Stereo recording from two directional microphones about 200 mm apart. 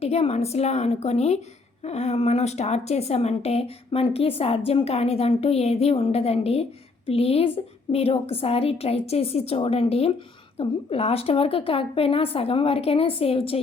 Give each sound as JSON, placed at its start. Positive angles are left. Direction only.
{"t": 0.0, "sound": "a woman's voice", "side_deg": 30}